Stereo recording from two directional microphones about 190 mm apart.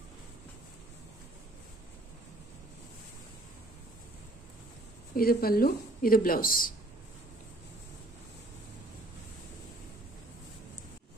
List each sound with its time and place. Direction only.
5.1 s speech: 50° left (ahead or behind)